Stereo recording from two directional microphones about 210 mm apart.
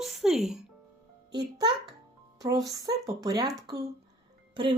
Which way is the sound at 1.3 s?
20° right (ahead or behind).